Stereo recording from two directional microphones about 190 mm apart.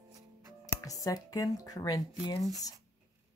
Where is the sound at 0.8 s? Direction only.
20° left (ahead or behind).